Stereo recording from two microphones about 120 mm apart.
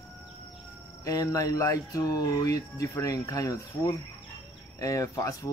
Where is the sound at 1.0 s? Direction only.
30° left (ahead or behind).